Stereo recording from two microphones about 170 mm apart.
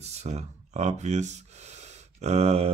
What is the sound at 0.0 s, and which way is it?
Speech, 40° right (ahead or behind).